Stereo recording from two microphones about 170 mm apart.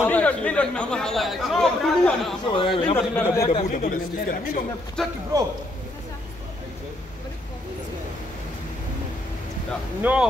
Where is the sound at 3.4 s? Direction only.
45° left (ahead or behind).